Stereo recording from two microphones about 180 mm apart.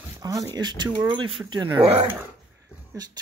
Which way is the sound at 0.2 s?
20° right (ahead or behind).